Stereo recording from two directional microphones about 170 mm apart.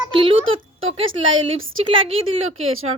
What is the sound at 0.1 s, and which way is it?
A woman's voice, 30° right (ahead or behind).